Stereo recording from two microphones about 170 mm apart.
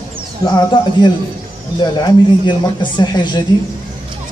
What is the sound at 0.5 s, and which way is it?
A man's voice, 25° left (ahead or behind).